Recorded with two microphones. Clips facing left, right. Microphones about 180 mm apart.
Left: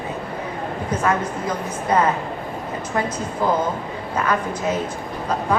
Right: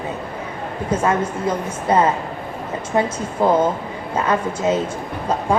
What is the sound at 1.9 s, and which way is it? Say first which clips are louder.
A woman's voice: right 2 dB; 30° right (ahead or behind).